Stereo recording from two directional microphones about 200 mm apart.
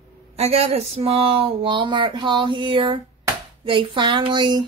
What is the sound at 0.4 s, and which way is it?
Speech, 30° right (ahead or behind).